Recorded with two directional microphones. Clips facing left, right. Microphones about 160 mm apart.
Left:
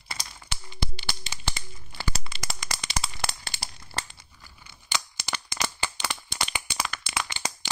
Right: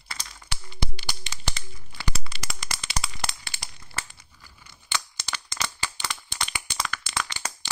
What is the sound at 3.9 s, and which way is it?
Crumpling, 30° left (ahead or behind).